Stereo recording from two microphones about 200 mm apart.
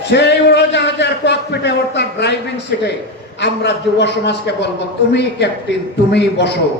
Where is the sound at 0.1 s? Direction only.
55° left (ahead or behind).